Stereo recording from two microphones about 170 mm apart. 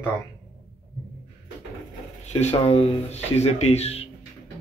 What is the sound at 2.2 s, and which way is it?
Speech, 40° left (ahead or behind).